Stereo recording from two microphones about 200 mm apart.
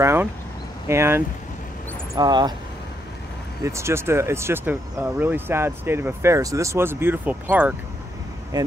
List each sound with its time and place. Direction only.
0.0 s speech: 10° right (ahead or behind)
3.6 s speech: 15° right (ahead or behind)